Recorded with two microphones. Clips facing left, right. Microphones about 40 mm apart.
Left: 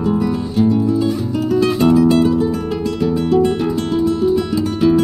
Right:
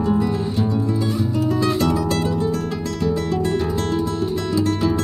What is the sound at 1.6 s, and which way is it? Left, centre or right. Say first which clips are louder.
Music: left 10 dB; left.